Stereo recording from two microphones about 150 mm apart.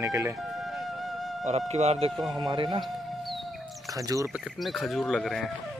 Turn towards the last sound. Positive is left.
turn(degrees=0)  # may be behind; listen again after turning